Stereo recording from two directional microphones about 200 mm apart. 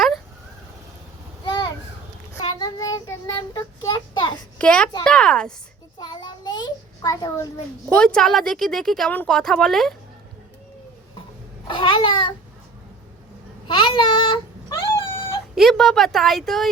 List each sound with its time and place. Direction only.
1.5 s a sound: 20° left (ahead or behind)
2.4 s child singing: 20° left (ahead or behind)
4.5 s a child's voice: 5° left (ahead or behind)
6.0 s a sound: 20° left (ahead or behind)
7.9 s speech: 5° left (ahead or behind)
11.7 s a child's voice: 25° left (ahead or behind)
13.7 s babbling: 25° left (ahead or behind)
15.5 s speech: centre (ahead or behind)